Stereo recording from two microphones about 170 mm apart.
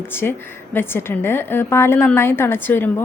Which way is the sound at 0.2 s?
15° left (ahead or behind).